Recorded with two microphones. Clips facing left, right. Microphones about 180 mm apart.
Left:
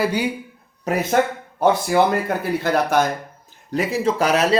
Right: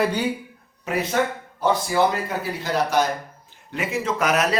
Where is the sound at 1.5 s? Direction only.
55° left (ahead or behind).